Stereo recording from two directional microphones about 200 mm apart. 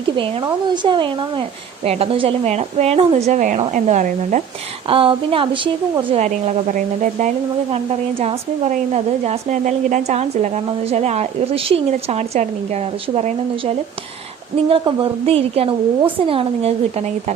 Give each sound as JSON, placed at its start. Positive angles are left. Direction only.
{"t": 0.2, "sound": "a woman's voice", "side_deg": -25}
{"t": 4.9, "sound": "a woman's voice", "side_deg": -25}